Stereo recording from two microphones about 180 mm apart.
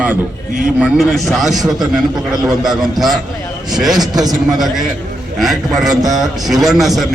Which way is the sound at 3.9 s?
20° right (ahead or behind).